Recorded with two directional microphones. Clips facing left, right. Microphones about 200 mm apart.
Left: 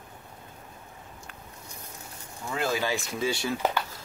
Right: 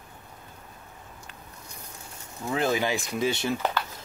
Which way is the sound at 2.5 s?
20° right (ahead or behind).